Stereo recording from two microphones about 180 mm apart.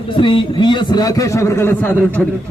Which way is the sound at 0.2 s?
25° left (ahead or behind).